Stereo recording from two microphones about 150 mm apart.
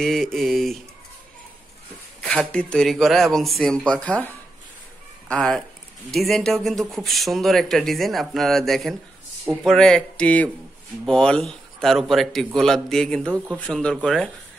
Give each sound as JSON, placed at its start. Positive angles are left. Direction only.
{"t": 0.0, "sound": "speech", "side_deg": 0}
{"t": 2.2, "sound": "speech", "side_deg": 5}
{"t": 5.3, "sound": "speech", "side_deg": 5}